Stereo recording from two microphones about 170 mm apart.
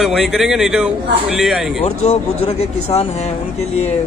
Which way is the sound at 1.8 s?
40° left (ahead or behind).